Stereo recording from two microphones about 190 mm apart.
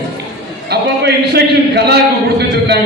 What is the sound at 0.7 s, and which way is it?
Speech, 60° right (ahead or behind).